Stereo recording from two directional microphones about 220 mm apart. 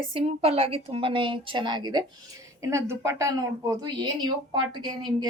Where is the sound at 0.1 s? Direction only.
25° right (ahead or behind).